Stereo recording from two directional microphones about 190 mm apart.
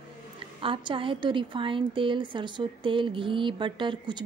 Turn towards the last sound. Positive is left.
turn(degrees=-25)  # may be behind; listen again after turning